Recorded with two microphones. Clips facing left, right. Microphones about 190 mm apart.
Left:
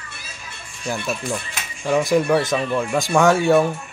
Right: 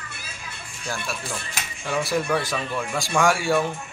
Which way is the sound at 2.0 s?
15° left (ahead or behind).